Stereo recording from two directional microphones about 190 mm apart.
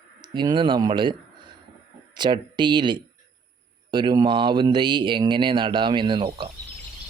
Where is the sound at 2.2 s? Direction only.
25° right (ahead or behind).